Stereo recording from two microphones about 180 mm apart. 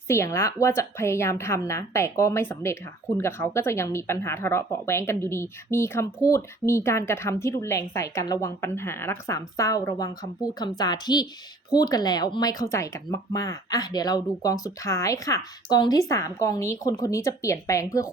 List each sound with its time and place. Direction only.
0.1 s a woman's voice: 15° left (ahead or behind)